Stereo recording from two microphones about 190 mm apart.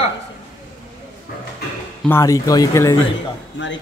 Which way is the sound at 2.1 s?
15° left (ahead or behind).